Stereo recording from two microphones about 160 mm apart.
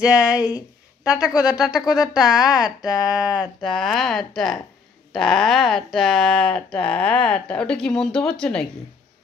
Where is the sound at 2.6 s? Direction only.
5° right (ahead or behind).